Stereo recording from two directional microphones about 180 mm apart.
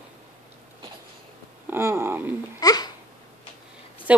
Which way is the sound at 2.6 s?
20° left (ahead or behind).